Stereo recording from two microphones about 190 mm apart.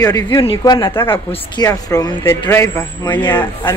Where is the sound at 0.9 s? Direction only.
10° left (ahead or behind).